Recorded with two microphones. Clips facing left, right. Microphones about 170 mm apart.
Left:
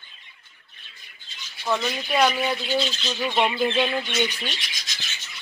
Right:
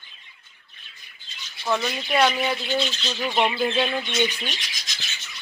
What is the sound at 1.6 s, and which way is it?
Speech, centre (ahead or behind).